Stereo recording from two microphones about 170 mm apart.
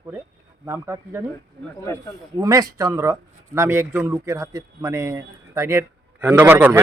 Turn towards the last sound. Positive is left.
turn(degrees=-10)  # may be behind; listen again after turning